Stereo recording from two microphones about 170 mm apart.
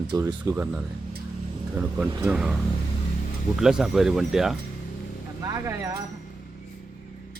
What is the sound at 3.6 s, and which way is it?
Speech, 5° right (ahead or behind).